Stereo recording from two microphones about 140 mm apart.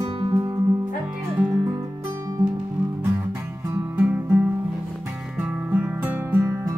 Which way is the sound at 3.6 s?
15° right (ahead or behind).